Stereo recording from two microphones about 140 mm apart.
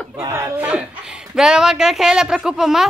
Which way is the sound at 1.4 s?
5° right (ahead or behind).